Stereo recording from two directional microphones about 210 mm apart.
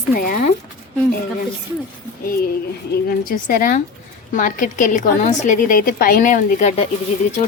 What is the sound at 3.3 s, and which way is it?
A woman's voice, 40° left (ahead or behind).